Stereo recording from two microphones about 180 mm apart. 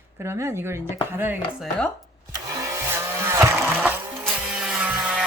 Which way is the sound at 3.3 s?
15° right (ahead or behind).